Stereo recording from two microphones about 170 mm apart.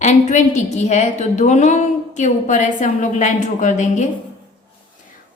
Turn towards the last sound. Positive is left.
turn(degrees=45)  # may be behind; listen again after turning